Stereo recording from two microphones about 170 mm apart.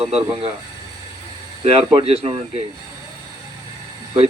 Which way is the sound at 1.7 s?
35° right (ahead or behind).